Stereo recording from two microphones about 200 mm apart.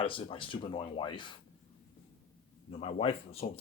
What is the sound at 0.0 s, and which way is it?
Speech, 25° left (ahead or behind).